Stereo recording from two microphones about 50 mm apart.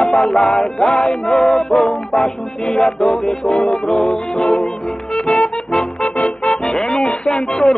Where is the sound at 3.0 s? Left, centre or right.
Centre.